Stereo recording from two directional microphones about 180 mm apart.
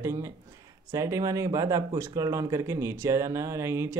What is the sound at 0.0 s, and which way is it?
Speech, 15° right (ahead or behind).